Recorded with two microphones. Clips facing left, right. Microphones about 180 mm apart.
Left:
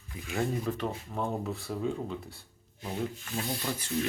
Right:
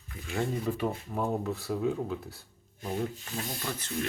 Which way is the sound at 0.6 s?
10° right (ahead or behind).